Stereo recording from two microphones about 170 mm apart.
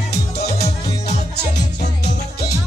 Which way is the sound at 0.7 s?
40° left (ahead or behind).